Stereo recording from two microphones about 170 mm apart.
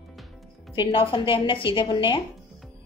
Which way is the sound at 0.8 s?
30° left (ahead or behind).